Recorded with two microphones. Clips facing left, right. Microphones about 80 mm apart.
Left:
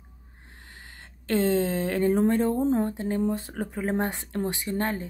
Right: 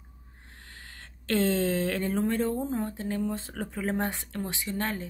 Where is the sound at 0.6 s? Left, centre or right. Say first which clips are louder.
Left 1 dB; left.